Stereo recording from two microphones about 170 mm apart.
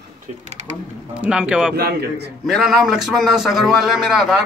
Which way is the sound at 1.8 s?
65° right (ahead or behind).